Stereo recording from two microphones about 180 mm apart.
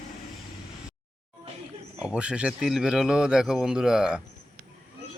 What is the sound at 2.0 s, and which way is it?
Speech, 5° right (ahead or behind).